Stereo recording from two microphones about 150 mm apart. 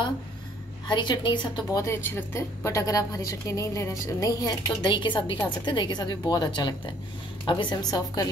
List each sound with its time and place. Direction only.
0.8 s a woman's voice: 30° left (ahead or behind)
1.8 s a woman's voice: 15° left (ahead or behind)